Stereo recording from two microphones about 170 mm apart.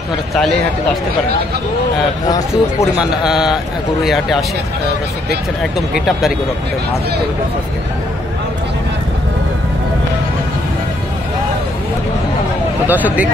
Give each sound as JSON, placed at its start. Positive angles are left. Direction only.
{"t": 2.2, "sound": "speech", "side_deg": 20}
{"t": 3.0, "sound": "speech", "side_deg": -5}
{"t": 5.6, "sound": "speech", "side_deg": 0}
{"t": 12.8, "sound": "speech", "side_deg": -10}